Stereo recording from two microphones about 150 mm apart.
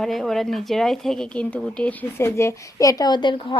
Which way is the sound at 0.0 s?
Centre (ahead or behind).